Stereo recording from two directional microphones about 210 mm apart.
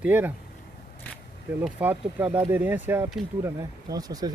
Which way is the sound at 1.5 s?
10° right (ahead or behind).